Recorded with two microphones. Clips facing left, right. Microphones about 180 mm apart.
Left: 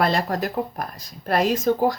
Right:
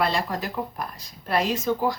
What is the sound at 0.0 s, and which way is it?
Speech, 45° left (ahead or behind).